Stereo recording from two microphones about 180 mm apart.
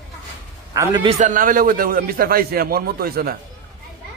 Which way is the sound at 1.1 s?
45° right (ahead or behind).